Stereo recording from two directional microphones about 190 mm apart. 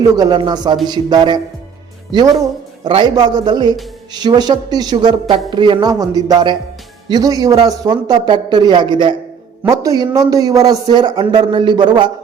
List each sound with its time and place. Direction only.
0.2 s a man's voice: 20° right (ahead or behind)